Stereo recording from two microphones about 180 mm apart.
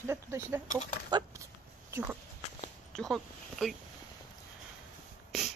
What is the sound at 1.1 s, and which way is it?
Dog, 15° right (ahead or behind).